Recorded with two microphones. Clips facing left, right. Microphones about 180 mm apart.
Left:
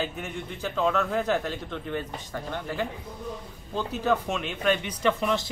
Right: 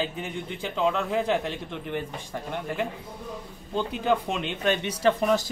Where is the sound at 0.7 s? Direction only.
20° right (ahead or behind).